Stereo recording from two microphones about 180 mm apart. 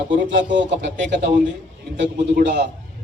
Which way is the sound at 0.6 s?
90° right.